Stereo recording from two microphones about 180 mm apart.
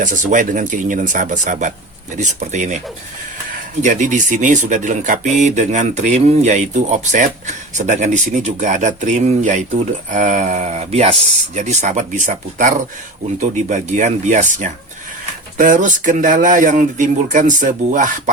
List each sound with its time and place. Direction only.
0.0 s speech: 45° right (ahead or behind)
3.8 s speech: 40° right (ahead or behind)